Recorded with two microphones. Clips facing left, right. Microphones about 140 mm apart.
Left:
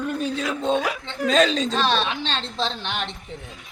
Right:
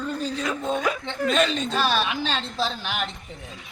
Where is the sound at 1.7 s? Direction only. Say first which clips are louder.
Left 1 dB; 5° right (ahead or behind).